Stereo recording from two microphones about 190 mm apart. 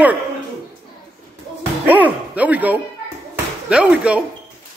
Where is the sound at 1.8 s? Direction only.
10° right (ahead or behind).